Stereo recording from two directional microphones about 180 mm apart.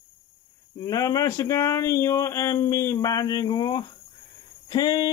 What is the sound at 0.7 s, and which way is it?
Speech, 20° left (ahead or behind).